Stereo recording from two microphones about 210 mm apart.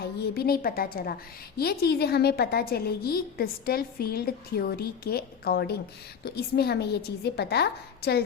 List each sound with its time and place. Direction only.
0.0 s a woman's voice: 45° left (ahead or behind)